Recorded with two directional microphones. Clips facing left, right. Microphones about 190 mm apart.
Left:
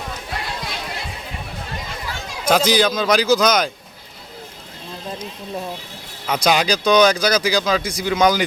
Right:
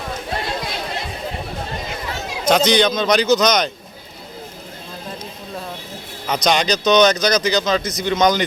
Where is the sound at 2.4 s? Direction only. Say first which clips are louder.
Right 1 dB; 5° left (ahead or behind).